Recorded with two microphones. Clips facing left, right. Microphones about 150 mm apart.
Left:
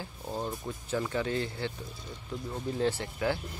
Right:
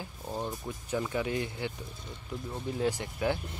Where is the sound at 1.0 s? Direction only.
15° right (ahead or behind).